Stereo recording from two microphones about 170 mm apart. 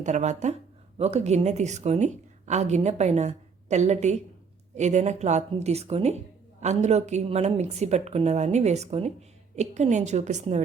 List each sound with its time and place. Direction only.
0.0 s a woman's voice: 45° right (ahead or behind)